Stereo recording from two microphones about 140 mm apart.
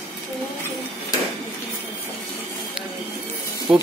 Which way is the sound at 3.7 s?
5° right (ahead or behind).